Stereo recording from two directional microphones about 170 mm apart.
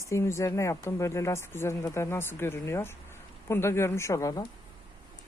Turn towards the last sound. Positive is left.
turn(degrees=20)  # may be behind; listen again after turning